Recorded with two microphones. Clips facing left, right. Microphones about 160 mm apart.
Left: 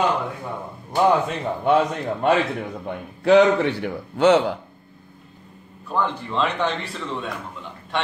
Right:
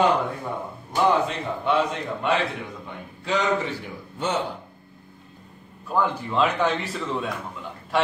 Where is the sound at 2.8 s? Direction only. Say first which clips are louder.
Left 12 dB; 60° left (ahead or behind); by 4.4 s 85° left.